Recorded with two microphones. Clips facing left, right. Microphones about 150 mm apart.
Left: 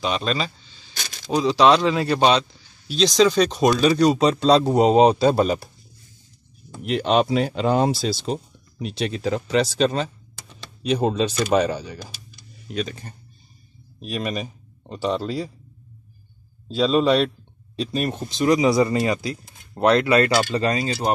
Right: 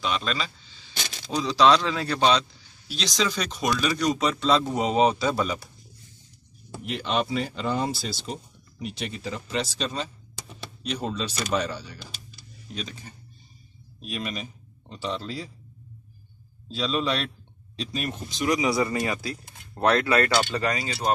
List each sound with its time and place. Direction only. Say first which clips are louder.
0.0 s speech: left 4 dB; 25° left (ahead or behind)
1.2 s a man's voice: left 4 dB; 55° left (ahead or behind)
1.8 s a man's voice: left 6 dB; 15° left (ahead or behind)
2.9 s a man's voice: left 10 dB; 30° left (ahead or behind)
5.3 s a man's voice: left 7 dB; 50° left (ahead or behind)
7.0 s speech: left 7 dB; 65° left (ahead or behind)
11.5 s a man's voice: left 6 dB; 50° left (ahead or behind)
14.0 s a man's voice: left 6 dB; 45° left (ahead or behind)
16.6 s a man's voice: left 8 dB; 45° left (ahead or behind)
18.4 s speech: left 6 dB; 25° left (ahead or behind)